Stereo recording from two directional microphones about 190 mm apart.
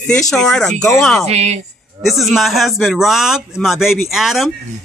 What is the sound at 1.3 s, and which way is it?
Speech, 35° right (ahead or behind).